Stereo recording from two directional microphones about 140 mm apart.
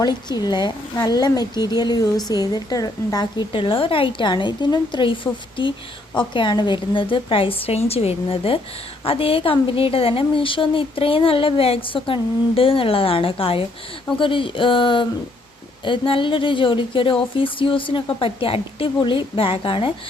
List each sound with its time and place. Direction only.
0.0 s a woman's voice: 30° left (ahead or behind)